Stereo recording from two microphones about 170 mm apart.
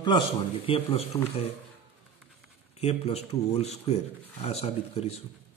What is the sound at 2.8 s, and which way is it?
A man's voice, 40° left (ahead or behind).